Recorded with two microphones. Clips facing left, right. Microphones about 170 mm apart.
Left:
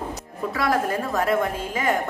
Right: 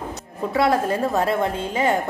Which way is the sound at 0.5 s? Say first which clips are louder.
Right 4 dB; 25° right (ahead or behind).